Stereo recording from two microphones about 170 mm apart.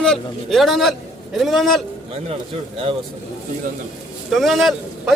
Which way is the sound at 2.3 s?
35° right (ahead or behind).